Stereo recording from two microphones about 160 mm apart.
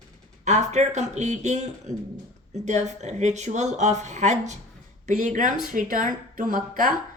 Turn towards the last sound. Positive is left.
turn(degrees=-60)  # may be behind; listen again after turning